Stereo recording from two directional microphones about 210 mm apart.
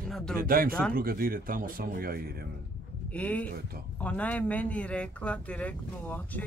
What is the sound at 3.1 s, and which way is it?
Speech, 5° left (ahead or behind).